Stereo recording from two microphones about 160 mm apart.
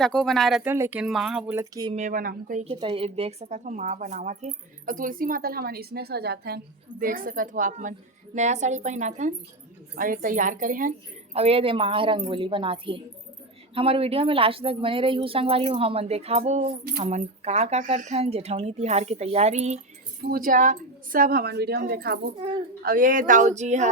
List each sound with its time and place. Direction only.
0.0 s speech: 5° left (ahead or behind)
0.6 s speech: 10° right (ahead or behind)
1.5 s speech: 25° right (ahead or behind)
2.0 s speech: 55° right (ahead or behind)
2.7 s speech: 35° right (ahead or behind); by 6.6 s 80° right
7.0 s speech: 60° right (ahead or behind)
9.9 s speech: 60° right (ahead or behind)
11.3 s speech: 40° right (ahead or behind)
20.3 s a woman's voice: 60° right (ahead or behind); by 22.2 s 75° right (ahead or behind)
22.8 s speech: 65° right (ahead or behind); by 23.9 s 45° right (ahead or behind)